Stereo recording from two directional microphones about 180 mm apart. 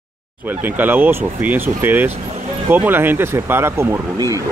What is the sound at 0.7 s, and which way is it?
Speech, 10° right (ahead or behind).